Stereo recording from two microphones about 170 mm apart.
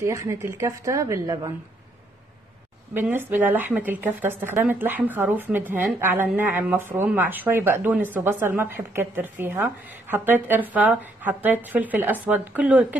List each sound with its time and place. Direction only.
0.0 s speech: 20° right (ahead or behind)
2.9 s speech: 10° right (ahead or behind)